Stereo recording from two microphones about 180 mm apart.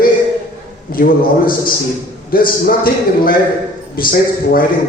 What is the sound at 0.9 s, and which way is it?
A man's voice, 55° left (ahead or behind).